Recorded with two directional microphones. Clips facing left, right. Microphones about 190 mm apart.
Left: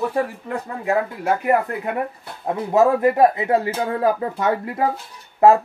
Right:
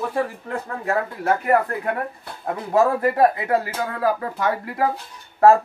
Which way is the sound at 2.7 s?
20° left (ahead or behind).